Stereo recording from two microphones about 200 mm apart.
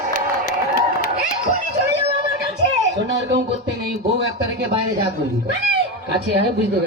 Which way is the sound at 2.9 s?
60° right (ahead or behind).